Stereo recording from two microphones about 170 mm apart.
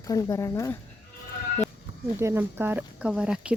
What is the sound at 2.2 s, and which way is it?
Speech, 15° right (ahead or behind).